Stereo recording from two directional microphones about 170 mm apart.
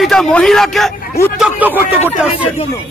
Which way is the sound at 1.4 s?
10° right (ahead or behind).